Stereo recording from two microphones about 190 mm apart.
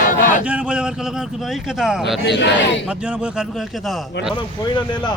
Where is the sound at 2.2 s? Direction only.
65° left (ahead or behind).